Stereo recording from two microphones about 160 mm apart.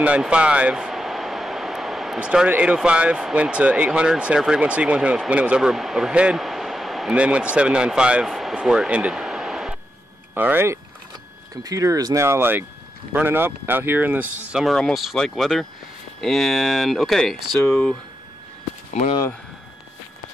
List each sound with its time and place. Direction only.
0.0 s speech: 5° right (ahead or behind)
10.3 s speech: 10° right (ahead or behind)
14.5 s speech: centre (ahead or behind)